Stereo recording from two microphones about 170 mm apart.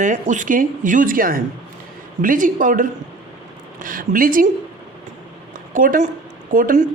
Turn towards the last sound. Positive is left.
turn(degrees=-50)  # may be behind; listen again after turning